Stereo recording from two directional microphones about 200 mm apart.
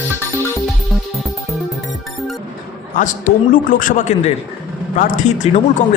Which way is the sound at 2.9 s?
40° left (ahead or behind).